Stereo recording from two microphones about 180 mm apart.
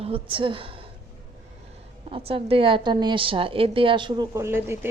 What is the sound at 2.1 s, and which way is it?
A woman's voice, 30° right (ahead or behind).